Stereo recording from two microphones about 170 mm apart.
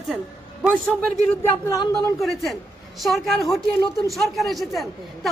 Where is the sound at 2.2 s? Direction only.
Centre (ahead or behind).